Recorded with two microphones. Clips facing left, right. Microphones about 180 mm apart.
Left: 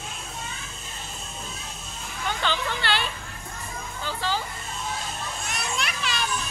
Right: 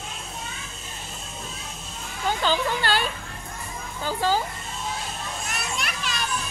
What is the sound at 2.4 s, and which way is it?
Speech, 40° right (ahead or behind).